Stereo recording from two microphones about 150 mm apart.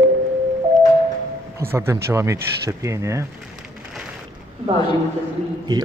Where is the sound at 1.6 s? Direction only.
15° right (ahead or behind).